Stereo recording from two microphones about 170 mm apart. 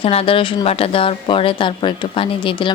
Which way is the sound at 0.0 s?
35° left (ahead or behind).